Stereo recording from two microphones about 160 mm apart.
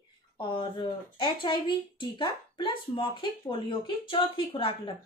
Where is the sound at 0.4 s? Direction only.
30° left (ahead or behind).